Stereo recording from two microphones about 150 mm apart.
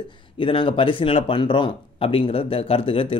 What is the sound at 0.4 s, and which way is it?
Speech, 35° left (ahead or behind).